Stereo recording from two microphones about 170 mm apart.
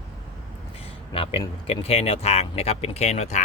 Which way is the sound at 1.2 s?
35° left (ahead or behind).